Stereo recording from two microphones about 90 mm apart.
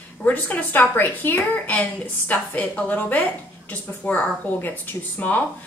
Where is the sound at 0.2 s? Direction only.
20° left (ahead or behind).